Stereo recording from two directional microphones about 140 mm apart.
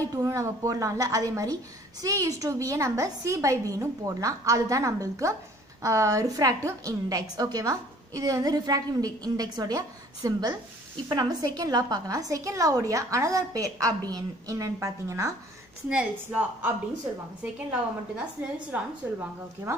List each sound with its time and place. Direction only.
0.1 s a woman's voice: 25° right (ahead or behind)
15.9 s a woman's voice: 10° right (ahead or behind)